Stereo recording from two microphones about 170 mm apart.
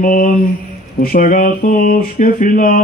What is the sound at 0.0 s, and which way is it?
Mantra, 55° left (ahead or behind).